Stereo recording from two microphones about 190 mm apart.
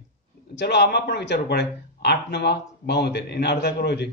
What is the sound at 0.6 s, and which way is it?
Speech, 60° left (ahead or behind).